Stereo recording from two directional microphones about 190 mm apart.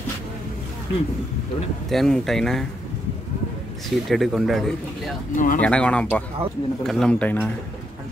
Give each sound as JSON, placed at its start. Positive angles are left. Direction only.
{"t": 1.9, "sound": "speech", "side_deg": 0}
{"t": 3.9, "sound": "speech", "side_deg": 0}
{"t": 5.3, "sound": "speech", "side_deg": 45}
{"t": 5.6, "sound": "speech", "side_deg": 5}